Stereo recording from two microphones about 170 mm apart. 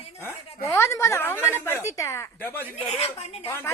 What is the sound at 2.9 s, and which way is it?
Speech, 35° left (ahead or behind).